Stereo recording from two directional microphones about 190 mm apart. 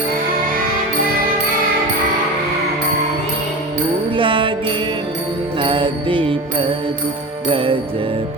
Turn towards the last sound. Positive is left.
turn(degrees=-25)  # may be behind; listen again after turning